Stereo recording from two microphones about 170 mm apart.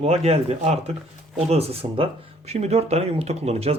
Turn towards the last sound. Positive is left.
turn(degrees=-40)  # may be behind; listen again after turning